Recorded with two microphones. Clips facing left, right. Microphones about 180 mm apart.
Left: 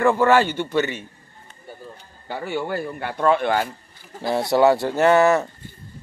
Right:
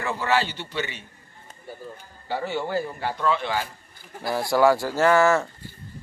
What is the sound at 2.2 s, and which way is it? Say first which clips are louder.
A man's voice: left 1 dB; 55° left (ahead or behind).